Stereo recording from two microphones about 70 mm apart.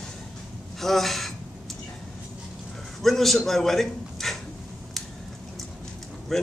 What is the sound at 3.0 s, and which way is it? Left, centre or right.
A man's voice, centre.